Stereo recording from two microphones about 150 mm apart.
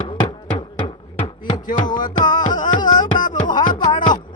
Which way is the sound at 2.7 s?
30° left (ahead or behind).